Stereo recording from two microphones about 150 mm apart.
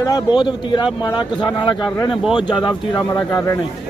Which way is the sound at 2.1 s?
Centre (ahead or behind).